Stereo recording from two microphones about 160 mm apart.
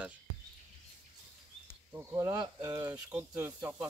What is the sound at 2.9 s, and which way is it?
Speech, 10° right (ahead or behind).